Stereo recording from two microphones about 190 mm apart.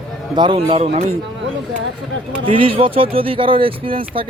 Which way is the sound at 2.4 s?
25° right (ahead or behind).